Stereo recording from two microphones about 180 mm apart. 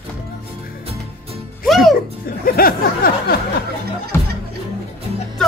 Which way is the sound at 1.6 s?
Centre (ahead or behind).